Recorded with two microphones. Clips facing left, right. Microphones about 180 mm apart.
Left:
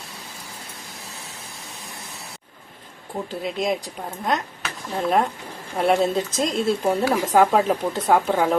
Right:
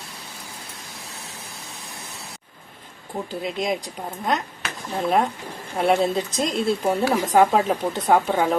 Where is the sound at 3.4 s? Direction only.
Centre (ahead or behind).